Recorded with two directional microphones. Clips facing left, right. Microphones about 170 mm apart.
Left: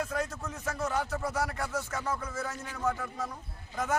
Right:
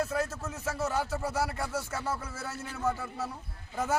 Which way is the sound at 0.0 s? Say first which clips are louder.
Right 2 dB; 5° right (ahead or behind).